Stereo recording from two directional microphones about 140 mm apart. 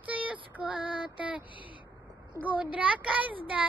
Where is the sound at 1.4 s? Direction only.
35° left (ahead or behind).